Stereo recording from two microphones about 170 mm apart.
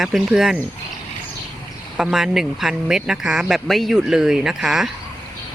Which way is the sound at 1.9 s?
Centre (ahead or behind).